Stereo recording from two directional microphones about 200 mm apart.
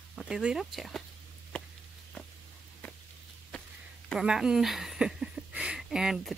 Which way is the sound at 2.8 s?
10° left (ahead or behind).